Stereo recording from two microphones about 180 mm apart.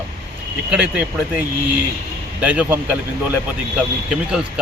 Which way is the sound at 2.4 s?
10° right (ahead or behind).